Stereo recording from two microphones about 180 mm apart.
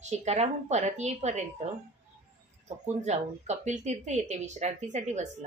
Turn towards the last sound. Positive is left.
turn(degrees=-40)  # may be behind; listen again after turning